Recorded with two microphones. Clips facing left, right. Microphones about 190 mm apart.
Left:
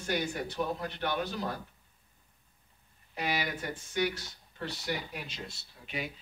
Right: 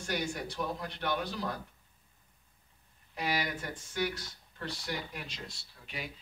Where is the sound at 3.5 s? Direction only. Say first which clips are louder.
Left 3 dB; 10° left (ahead or behind).